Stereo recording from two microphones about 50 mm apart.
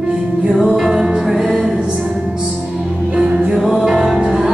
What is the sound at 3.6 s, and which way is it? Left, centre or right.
Music, centre.